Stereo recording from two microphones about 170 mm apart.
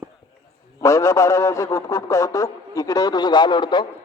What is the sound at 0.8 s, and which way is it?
A man's voice, 20° left (ahead or behind).